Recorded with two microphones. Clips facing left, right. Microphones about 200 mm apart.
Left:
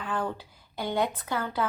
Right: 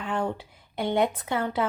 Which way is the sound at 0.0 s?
25° right (ahead or behind).